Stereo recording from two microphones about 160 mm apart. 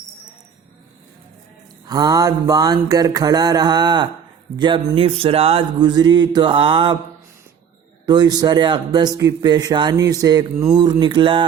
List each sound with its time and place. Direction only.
1.9 s speech: 25° right (ahead or behind)
8.0 s speech: 25° right (ahead or behind)